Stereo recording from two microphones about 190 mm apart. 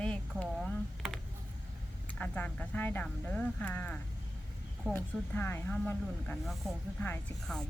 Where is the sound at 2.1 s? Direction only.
5° left (ahead or behind).